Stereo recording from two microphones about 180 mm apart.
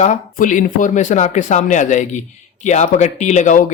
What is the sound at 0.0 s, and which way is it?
Speech, 45° left (ahead or behind).